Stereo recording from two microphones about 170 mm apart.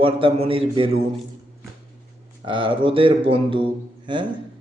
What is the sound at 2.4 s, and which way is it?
A man's voice, 30° right (ahead or behind).